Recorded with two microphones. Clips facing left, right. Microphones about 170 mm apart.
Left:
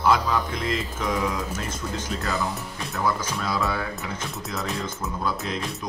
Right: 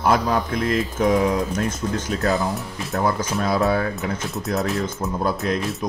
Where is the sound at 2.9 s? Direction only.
50° right (ahead or behind).